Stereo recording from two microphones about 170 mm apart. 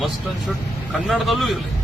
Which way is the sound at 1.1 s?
Centre (ahead or behind).